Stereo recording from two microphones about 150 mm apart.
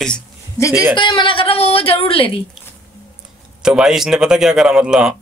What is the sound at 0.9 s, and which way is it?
A woman's voice, 30° left (ahead or behind).